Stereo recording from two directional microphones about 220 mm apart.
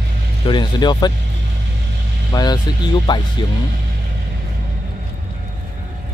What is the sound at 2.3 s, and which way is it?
Speech, 15° left (ahead or behind).